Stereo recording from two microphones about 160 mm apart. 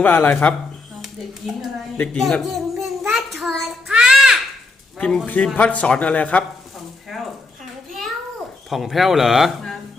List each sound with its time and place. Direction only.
0.0 s a man's voice: 10° left (ahead or behind)
1.0 s speech: centre (ahead or behind)
2.0 s child singing: 5° left (ahead or behind)
4.9 s a man's voice: 5° left (ahead or behind)
7.1 s a sound: centre (ahead or behind)
8.7 s speech: centre (ahead or behind)